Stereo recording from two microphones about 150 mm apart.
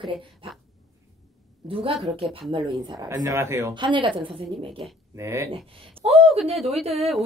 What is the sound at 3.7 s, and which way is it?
Speech, 35° right (ahead or behind).